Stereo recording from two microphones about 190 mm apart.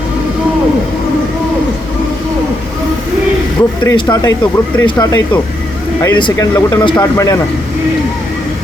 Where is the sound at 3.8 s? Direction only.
20° left (ahead or behind).